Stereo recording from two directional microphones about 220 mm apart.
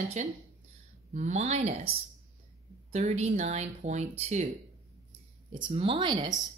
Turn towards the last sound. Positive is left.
turn(degrees=-20)  # may be behind; listen again after turning